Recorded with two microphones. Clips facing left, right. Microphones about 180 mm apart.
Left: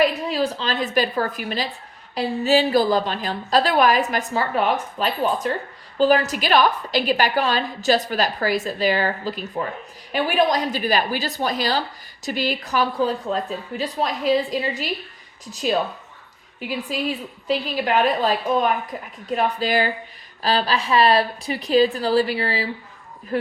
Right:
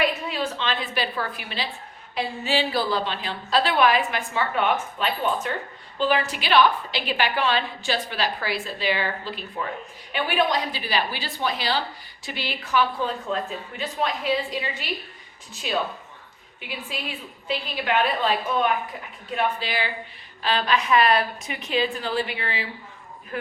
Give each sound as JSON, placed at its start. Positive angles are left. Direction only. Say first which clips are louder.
{"t": 0.0, "sound": "a woman's voice", "louder": "left 5 dB", "side_deg": 35}
{"t": 16.6, "sound": "a woman's voice", "louder": "left 8 dB", "side_deg": 40}